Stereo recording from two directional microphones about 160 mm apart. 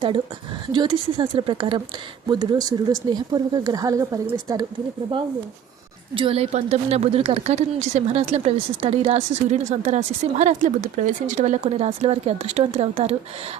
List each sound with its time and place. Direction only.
0.7 s speech: 30° right (ahead or behind)
6.1 s speech: 35° right (ahead or behind)